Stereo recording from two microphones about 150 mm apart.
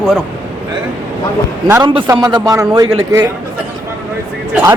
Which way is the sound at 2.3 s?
25° right (ahead or behind).